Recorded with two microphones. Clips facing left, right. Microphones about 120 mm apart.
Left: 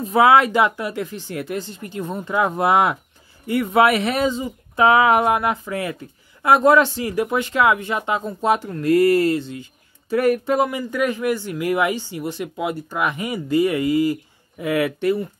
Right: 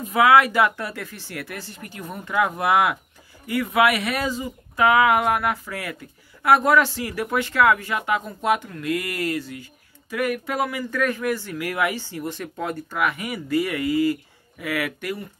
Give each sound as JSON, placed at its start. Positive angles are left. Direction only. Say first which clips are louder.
{"t": 0.0, "sound": "speech", "louder": "left 2 dB", "side_deg": 30}
{"t": 12.9, "sound": "speech", "louder": "left 2 dB", "side_deg": 25}